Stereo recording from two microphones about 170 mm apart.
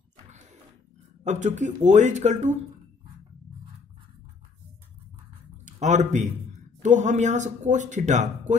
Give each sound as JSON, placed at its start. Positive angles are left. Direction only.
{"t": 1.2, "sound": "speech", "side_deg": -45}
{"t": 5.7, "sound": "speech", "side_deg": -45}